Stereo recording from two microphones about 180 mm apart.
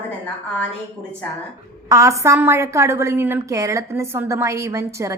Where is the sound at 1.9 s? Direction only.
15° right (ahead or behind).